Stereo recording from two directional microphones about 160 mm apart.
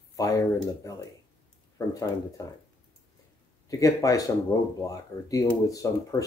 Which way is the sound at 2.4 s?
20° left (ahead or behind).